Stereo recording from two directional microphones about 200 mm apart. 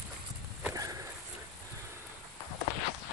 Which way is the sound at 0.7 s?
15° right (ahead or behind).